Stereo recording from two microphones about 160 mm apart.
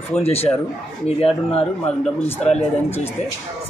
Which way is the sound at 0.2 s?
40° left (ahead or behind).